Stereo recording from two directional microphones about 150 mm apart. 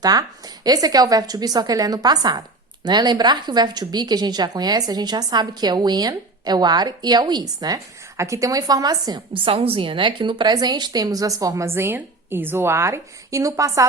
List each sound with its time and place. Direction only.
0.0 s speech: 25° right (ahead or behind)